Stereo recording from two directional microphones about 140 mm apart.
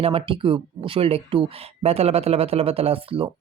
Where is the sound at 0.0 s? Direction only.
40° right (ahead or behind).